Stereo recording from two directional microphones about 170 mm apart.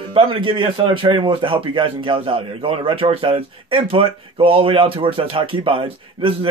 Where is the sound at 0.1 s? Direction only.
30° right (ahead or behind).